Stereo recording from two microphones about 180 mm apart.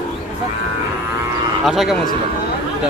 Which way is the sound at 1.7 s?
Centre (ahead or behind).